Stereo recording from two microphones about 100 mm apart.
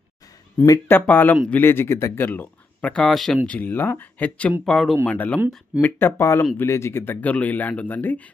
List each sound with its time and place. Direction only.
0.8 s a man's voice: 20° left (ahead or behind)
2.9 s speech: 5° left (ahead or behind)
3.4 s speech: 15° left (ahead or behind)
5.0 s speech: 15° left (ahead or behind)